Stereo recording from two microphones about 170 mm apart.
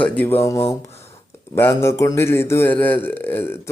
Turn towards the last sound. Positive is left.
turn(degrees=15)  # may be behind; listen again after turning